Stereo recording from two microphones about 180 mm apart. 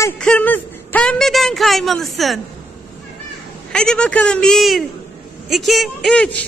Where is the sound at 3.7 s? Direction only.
5° left (ahead or behind).